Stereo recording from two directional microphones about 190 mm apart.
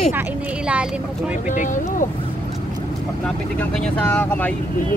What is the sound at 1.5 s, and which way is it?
Speech, 40° left (ahead or behind).